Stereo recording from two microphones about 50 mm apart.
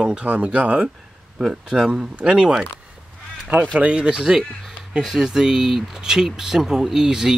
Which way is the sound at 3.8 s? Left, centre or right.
Right.